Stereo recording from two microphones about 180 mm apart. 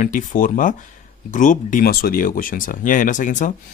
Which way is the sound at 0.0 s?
45° left (ahead or behind).